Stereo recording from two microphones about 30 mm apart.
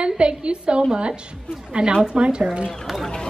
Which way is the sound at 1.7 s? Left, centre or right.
Right.